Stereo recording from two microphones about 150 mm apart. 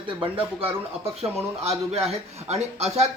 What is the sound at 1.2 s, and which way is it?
A man's voice, 40° right (ahead or behind).